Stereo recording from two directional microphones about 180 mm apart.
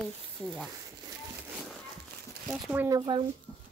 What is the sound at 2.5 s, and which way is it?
Speech, 10° right (ahead or behind).